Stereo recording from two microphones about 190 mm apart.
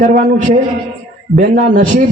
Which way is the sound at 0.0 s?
45° right (ahead or behind).